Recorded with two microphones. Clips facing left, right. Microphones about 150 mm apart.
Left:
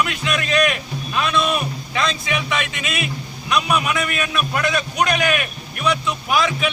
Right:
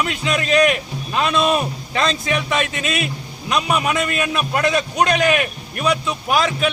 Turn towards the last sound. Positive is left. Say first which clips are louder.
# right 1 dB
turn(degrees=-40)  # may be behind; listen again after turning